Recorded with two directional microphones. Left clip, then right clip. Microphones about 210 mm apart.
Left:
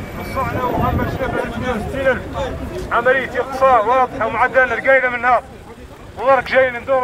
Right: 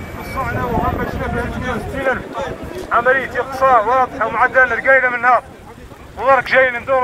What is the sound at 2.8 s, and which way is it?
Speech, 10° left (ahead or behind).